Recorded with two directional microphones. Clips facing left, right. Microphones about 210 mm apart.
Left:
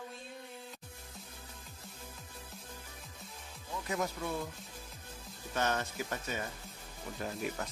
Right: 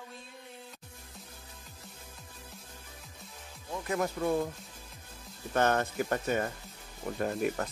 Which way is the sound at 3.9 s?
55° right (ahead or behind).